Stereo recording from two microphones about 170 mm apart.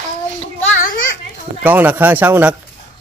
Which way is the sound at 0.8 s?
55° left (ahead or behind).